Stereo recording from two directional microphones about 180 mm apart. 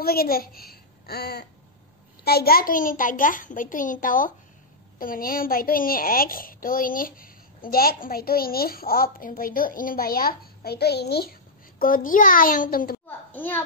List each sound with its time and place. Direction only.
0.0 s a woman's voice: 55° left (ahead or behind)
11.8 s a child's voice: 50° left (ahead or behind)
13.3 s a child's voice: 10° left (ahead or behind)